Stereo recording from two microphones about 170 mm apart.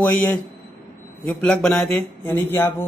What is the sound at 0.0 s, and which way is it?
A man's voice, 10° left (ahead or behind).